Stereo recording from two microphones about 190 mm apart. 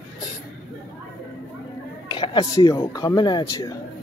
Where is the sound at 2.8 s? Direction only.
20° left (ahead or behind).